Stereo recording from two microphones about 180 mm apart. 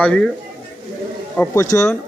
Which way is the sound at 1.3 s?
15° left (ahead or behind).